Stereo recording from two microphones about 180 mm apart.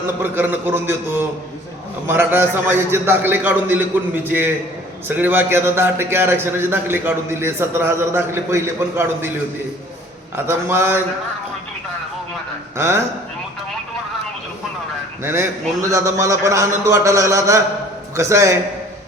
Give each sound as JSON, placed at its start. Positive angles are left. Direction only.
{"t": 0.2, "sound": "a man's voice", "side_deg": -10}
{"t": 10.3, "sound": "a man's voice", "side_deg": -15}
{"t": 12.7, "sound": "a man's voice", "side_deg": -15}
{"t": 15.2, "sound": "a man's voice", "side_deg": -15}